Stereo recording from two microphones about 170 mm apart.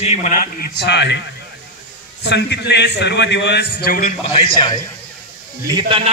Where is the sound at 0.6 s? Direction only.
80° left.